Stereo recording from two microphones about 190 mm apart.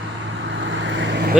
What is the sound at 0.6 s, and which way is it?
Vehicle, 75° right (ahead or behind).